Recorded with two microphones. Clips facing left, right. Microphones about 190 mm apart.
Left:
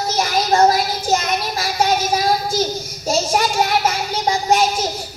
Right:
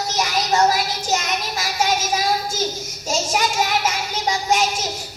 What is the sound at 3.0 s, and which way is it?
Child singing, 35° left (ahead or behind).